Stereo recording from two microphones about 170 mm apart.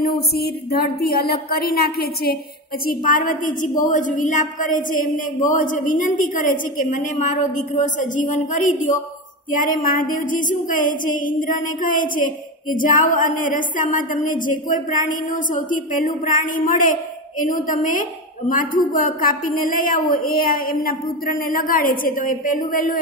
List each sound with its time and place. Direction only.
0.0 s speech: 65° left (ahead or behind)
2.9 s a woman's voice: 55° left (ahead or behind)